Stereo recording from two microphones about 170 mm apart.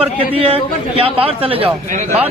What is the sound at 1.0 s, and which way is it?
Speech, 35° right (ahead or behind).